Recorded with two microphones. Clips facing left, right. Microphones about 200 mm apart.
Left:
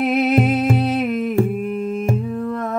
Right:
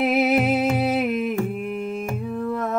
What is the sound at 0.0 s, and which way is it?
Humming, 5° right (ahead or behind).